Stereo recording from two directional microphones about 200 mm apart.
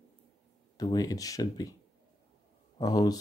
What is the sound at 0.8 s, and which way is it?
Speech, 20° left (ahead or behind).